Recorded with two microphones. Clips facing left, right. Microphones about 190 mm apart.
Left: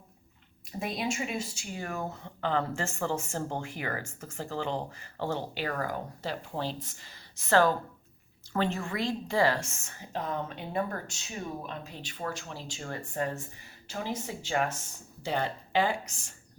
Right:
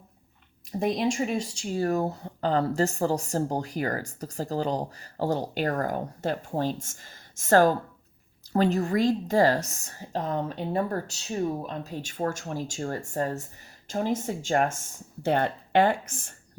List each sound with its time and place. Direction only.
0.9 s speech: 5° left (ahead or behind)
1.7 s speech: 35° right (ahead or behind); by 16.3 s 55° right (ahead or behind)